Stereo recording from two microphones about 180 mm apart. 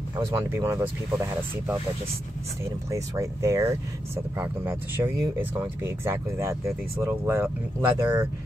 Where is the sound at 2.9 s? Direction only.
15° right (ahead or behind).